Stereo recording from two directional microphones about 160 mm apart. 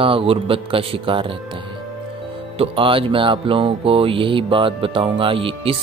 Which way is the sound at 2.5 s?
35° right (ahead or behind).